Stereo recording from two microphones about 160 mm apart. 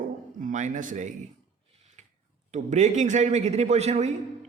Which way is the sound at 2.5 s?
45° right (ahead or behind).